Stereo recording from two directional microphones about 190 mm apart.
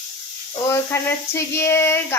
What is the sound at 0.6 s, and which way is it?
Speech, 15° left (ahead or behind).